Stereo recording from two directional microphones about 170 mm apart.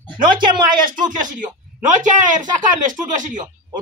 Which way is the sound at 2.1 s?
50° right (ahead or behind).